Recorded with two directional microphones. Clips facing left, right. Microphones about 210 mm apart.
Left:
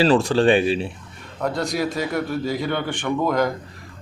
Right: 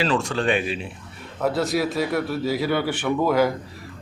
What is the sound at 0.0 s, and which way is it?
Speech, 35° left (ahead or behind).